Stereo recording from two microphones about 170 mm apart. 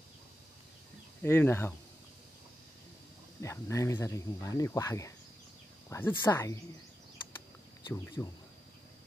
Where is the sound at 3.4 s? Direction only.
15° left (ahead or behind).